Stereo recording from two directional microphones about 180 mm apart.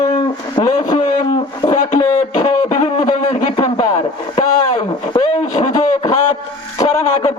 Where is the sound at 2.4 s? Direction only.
30° left (ahead or behind).